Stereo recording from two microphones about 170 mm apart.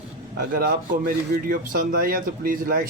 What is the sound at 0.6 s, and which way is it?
Speech, 60° right (ahead or behind).